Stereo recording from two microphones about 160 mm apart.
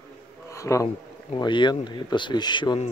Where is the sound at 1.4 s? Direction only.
30° left (ahead or behind).